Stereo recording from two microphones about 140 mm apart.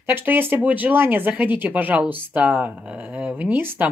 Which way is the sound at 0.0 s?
15° right (ahead or behind).